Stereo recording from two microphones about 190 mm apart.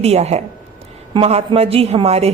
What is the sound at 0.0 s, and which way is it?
A woman's voice, 35° right (ahead or behind).